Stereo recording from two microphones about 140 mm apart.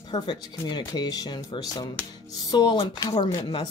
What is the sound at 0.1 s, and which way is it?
Speech, 30° left (ahead or behind).